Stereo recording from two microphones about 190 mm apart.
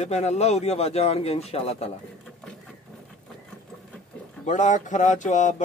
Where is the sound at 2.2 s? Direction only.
5° left (ahead or behind).